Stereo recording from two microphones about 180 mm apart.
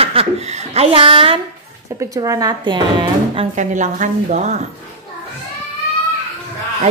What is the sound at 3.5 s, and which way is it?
A woman's voice, 40° right (ahead or behind).